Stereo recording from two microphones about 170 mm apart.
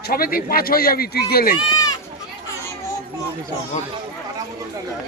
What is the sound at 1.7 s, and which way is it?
Sheep, 20° left (ahead or behind).